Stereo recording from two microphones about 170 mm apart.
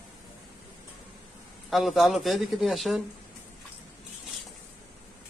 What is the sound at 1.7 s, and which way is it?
Speech, centre (ahead or behind).